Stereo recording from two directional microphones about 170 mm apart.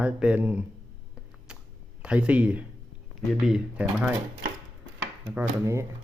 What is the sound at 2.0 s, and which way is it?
Speech, 5° right (ahead or behind).